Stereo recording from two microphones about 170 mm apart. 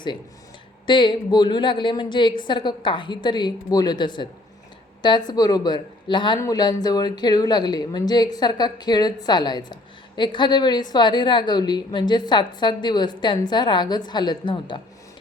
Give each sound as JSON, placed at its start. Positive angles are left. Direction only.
{"t": 0.9, "sound": "speech", "side_deg": 30}